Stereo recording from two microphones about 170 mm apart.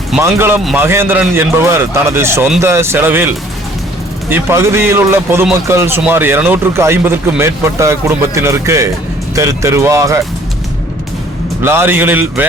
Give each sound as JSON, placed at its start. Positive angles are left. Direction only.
{"t": 0.2, "sound": "a man's voice", "side_deg": -15}
{"t": 11.6, "sound": "speech", "side_deg": -15}